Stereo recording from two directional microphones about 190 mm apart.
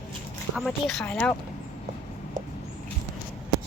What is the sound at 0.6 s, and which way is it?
Speech, centre (ahead or behind).